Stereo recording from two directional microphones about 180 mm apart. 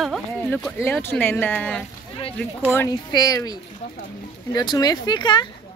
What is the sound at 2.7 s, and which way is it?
Speech, 20° left (ahead or behind).